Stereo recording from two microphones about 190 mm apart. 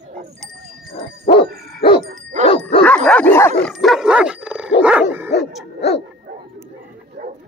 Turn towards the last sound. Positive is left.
turn(degrees=-40)  # may be behind; listen again after turning